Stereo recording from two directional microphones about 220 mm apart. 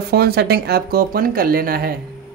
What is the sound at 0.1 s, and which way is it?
Speech, 45° right (ahead or behind).